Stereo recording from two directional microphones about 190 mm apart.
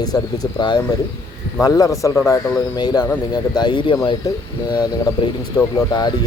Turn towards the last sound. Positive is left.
turn(degrees=20)  # may be behind; listen again after turning